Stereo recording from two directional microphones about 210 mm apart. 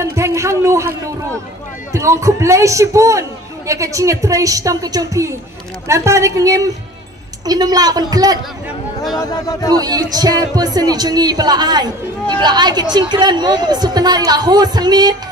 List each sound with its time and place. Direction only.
0.0 s a sound: 15° right (ahead or behind)
1.9 s a man's voice: 15° right (ahead or behind)
9.2 s speech: 15° left (ahead or behind)
9.8 s a man's voice: 20° right (ahead or behind)